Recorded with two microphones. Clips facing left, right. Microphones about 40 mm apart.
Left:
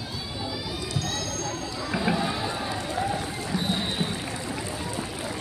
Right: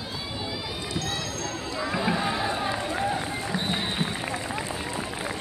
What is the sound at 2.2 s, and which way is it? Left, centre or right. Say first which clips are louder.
Run: right 2 dB; right.